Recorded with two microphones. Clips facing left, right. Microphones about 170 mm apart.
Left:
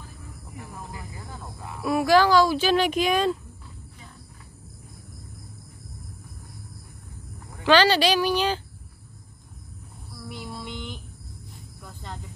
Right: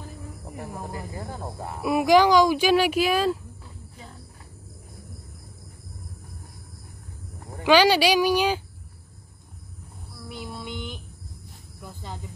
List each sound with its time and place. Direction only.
0.8 s speech: 40° right (ahead or behind)
1.8 s speech: 15° right (ahead or behind)
7.6 s speech: 10° right (ahead or behind)
10.2 s child singing: centre (ahead or behind)
11.8 s snake: 5° right (ahead or behind)